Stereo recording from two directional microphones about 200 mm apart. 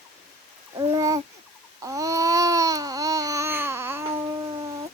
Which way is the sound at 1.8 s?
15° right (ahead or behind).